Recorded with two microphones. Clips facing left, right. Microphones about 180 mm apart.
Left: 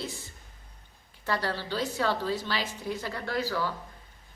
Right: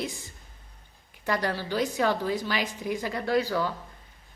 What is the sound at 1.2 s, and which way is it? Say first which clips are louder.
A woman's voice: right 3 dB; 15° right (ahead or behind).